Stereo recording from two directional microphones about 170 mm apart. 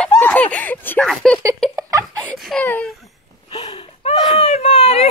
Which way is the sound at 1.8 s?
20° right (ahead or behind).